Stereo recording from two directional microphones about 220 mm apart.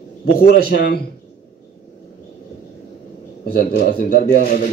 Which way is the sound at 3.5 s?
45° left (ahead or behind).